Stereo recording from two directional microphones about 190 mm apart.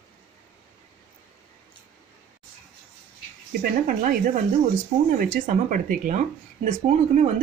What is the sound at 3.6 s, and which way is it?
Speech, 50° right (ahead or behind).